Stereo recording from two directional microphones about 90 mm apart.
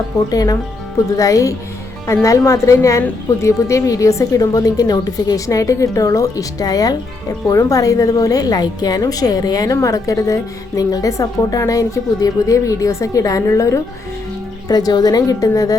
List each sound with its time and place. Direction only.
0.3 s a woman's voice: 45° left (ahead or behind)